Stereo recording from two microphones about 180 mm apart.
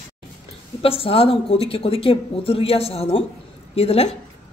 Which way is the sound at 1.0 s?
30° left (ahead or behind).